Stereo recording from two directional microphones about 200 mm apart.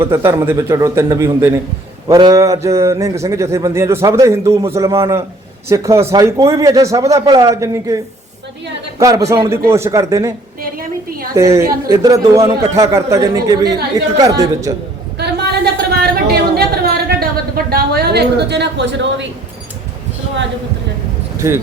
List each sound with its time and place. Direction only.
0.0 s a man's voice: 15° right (ahead or behind)
10.6 s a woman's voice: 45° right (ahead or behind)
11.3 s a man's voice: 15° right (ahead or behind)
15.2 s a sound: 55° right (ahead or behind)
21.4 s a man's voice: 15° right (ahead or behind)